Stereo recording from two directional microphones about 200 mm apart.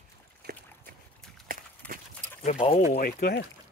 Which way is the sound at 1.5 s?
45° right (ahead or behind).